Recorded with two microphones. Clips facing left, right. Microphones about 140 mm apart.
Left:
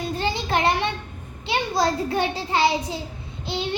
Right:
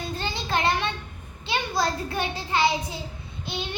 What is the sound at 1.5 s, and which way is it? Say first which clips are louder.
A child's voice: left 4 dB; 25° left (ahead or behind).